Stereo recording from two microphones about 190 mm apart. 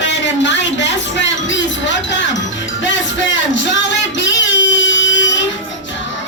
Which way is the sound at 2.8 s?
75° left (ahead or behind).